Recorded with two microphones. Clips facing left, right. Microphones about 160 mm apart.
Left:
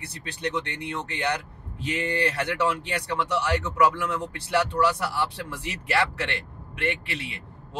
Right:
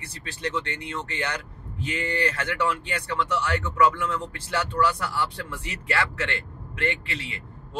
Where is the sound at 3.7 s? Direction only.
20° left (ahead or behind).